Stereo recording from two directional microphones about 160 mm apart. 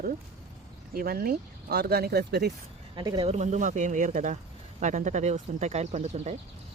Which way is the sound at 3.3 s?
50° right (ahead or behind).